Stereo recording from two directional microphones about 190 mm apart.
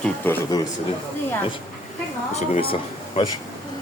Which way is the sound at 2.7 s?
25° left (ahead or behind).